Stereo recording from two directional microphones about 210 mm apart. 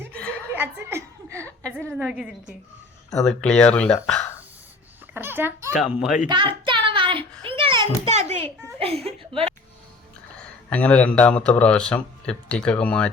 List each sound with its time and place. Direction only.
0.1 s chuckle: 5° left (ahead or behind)
0.5 s a sound: 10° right (ahead or behind)
1.9 s speech: 5° right (ahead or behind)
5.1 s a child's voice: 10° right (ahead or behind)
6.2 s a sound: 25° right (ahead or behind)
9.0 s a woman's voice: 30° right (ahead or behind)
10.7 s speech: 5° left (ahead or behind)